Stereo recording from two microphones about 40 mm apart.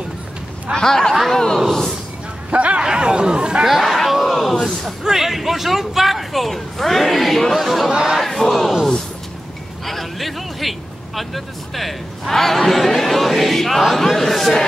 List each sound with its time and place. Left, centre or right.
0.7 s speech: centre
2.5 s speech: right
2.8 s speech: right
3.6 s a sound: centre
5.0 s speech: centre
8.2 s crowd: centre
9.8 s speech: centre